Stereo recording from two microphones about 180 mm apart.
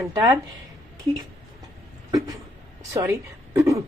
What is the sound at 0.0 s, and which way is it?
Speech, 20° right (ahead or behind).